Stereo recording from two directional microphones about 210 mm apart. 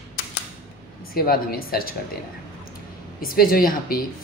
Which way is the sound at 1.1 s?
45° left (ahead or behind).